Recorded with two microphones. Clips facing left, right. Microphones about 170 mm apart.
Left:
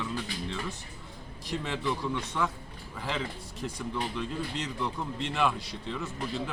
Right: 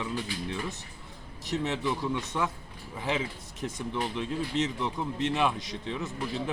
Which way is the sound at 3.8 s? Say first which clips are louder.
Right 1 dB; 20° right (ahead or behind).